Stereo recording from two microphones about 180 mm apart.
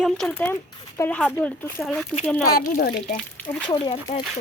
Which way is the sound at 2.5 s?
55° left (ahead or behind).